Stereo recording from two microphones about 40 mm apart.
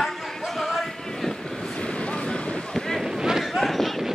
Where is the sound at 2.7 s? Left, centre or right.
Centre.